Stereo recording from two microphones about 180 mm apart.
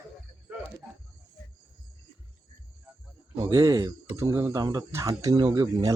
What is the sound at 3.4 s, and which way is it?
Speech, 20° right (ahead or behind).